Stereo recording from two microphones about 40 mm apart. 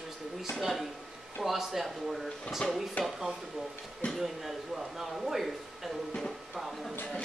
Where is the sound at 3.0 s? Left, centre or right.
Left.